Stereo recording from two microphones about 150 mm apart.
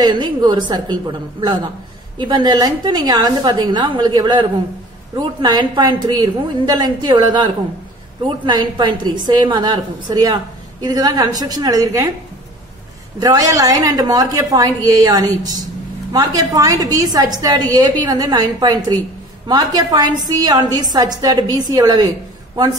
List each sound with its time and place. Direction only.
0.0 s a woman's voice: 30° right (ahead or behind)
8.5 s a woman's voice: 30° right (ahead or behind)
13.2 s a woman's voice: 25° right (ahead or behind)